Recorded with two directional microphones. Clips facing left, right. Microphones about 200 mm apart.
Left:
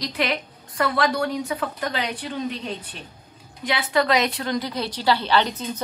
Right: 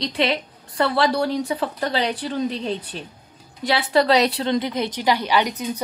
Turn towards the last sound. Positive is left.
turn(degrees=-15)  # may be behind; listen again after turning